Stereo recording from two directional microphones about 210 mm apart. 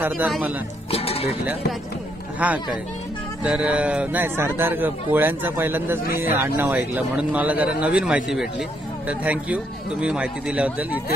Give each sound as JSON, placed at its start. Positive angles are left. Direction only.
{"t": 0.0, "sound": "speech", "side_deg": -5}
{"t": 0.9, "sound": "music", "side_deg": 30}
{"t": 2.4, "sound": "speech", "side_deg": -5}